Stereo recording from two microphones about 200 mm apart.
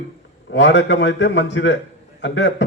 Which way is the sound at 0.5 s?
65° left (ahead or behind).